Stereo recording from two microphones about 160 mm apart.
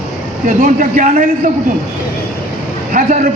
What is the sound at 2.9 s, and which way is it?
Speech, 55° right (ahead or behind).